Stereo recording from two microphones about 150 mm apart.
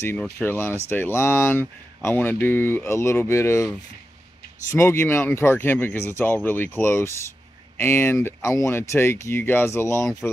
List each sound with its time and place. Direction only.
0.0 s speech: 15° left (ahead or behind)
4.7 s speech: 15° left (ahead or behind)